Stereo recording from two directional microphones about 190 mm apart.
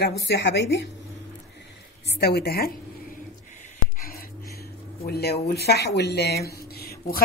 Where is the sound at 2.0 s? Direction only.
60° left (ahead or behind).